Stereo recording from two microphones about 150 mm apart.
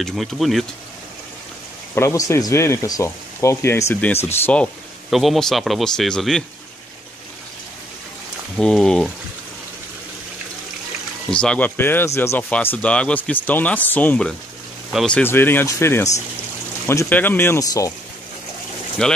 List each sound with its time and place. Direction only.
0.0 s speech: centre (ahead or behind)
2.0 s speech: 20° left (ahead or behind)
5.1 s speech: centre (ahead or behind)
8.5 s speech: 5° left (ahead or behind)
11.2 s speech: 5° left (ahead or behind); by 17.9 s 20° left (ahead or behind)
19.0 s speech: 5° left (ahead or behind)